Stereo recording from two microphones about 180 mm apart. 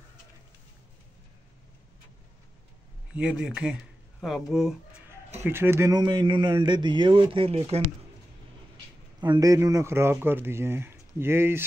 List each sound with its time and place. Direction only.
3.1 s speech: 5° right (ahead or behind)
5.4 s a man's voice: 15° right (ahead or behind); by 7.8 s 30° right (ahead or behind)
9.2 s speech: 20° right (ahead or behind)